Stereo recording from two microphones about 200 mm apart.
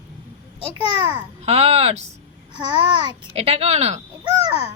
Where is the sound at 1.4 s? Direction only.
30° right (ahead or behind).